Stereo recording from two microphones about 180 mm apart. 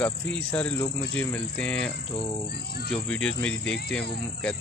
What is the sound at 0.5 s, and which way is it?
Speech, 5° left (ahead or behind).